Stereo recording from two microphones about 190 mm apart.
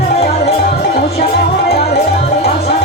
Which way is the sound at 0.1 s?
35° left (ahead or behind).